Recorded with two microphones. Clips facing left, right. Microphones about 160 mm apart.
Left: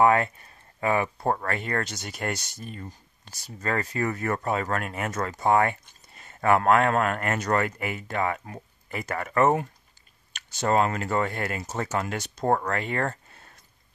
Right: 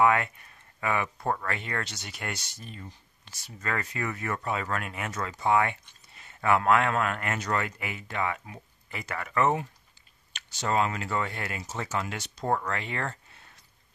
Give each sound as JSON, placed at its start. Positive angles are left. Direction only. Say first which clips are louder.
{"t": 0.0, "sound": "speech", "louder": "left 3 dB", "side_deg": 35}